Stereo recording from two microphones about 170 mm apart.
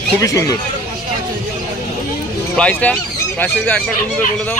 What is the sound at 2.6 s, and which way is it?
Speech, 10° left (ahead or behind).